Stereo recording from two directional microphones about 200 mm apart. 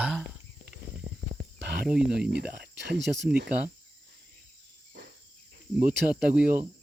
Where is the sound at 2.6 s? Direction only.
60° right (ahead or behind).